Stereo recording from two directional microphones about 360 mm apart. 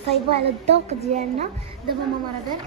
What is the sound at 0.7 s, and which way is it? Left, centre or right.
Speech, centre.